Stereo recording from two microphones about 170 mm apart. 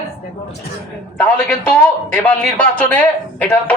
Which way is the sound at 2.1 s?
10° left (ahead or behind).